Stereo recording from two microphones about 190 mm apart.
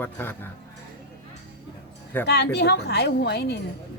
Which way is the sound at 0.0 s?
10° left (ahead or behind).